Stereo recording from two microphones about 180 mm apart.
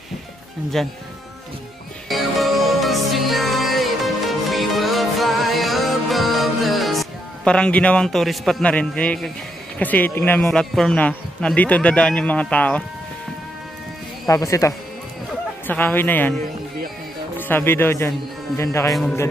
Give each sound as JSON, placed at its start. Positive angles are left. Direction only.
{"t": 0.8, "sound": "a man's voice", "side_deg": 0}
{"t": 2.0, "sound": "music", "side_deg": 0}
{"t": 9.8, "sound": "a man's voice", "side_deg": 10}
{"t": 14.2, "sound": "a man's voice", "side_deg": 15}
{"t": 17.4, "sound": "a man's voice", "side_deg": 10}
{"t": 18.9, "sound": "a man's voice", "side_deg": 0}